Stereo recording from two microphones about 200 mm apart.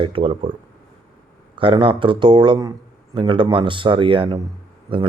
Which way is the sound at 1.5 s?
25° right (ahead or behind).